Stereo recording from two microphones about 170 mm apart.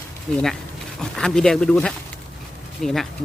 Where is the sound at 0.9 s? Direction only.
5° left (ahead or behind).